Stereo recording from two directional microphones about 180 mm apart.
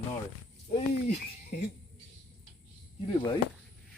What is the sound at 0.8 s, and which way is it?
Speech, 40° left (ahead or behind).